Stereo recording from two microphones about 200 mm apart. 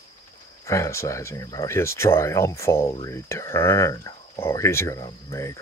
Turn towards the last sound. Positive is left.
turn(degrees=15)  # may be behind; listen again after turning